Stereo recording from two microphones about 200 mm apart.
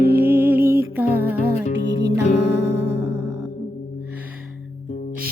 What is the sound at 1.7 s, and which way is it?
Music, 60° right (ahead or behind).